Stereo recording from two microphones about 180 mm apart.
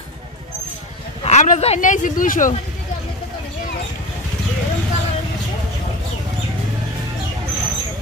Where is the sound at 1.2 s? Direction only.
40° left (ahead or behind).